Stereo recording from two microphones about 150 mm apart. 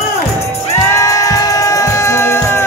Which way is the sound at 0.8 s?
20° left (ahead or behind).